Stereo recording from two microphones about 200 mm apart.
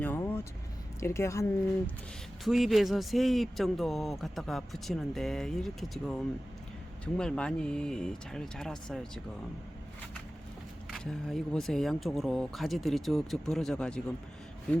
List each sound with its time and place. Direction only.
0.0 s vehicle: 10° left (ahead or behind)
0.9 s a woman's voice: 15° left (ahead or behind)
2.4 s speech: centre (ahead or behind)
10.9 s speech: 5° left (ahead or behind)